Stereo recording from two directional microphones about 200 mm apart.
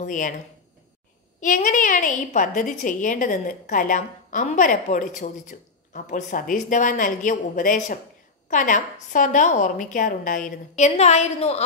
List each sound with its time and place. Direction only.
0.0 s a woman's voice: 40° left (ahead or behind)
1.4 s a woman's voice: 40° left (ahead or behind)